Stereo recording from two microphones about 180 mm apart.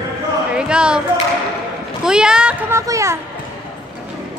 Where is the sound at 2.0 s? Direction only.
5° right (ahead or behind).